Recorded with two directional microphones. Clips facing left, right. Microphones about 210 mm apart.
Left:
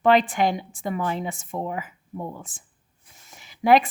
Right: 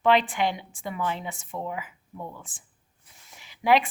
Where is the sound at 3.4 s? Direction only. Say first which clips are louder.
Left 4 dB; 45° left (ahead or behind).